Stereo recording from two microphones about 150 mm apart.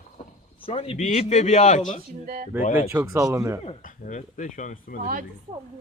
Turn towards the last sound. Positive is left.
turn(degrees=-65)  # may be behind; listen again after turning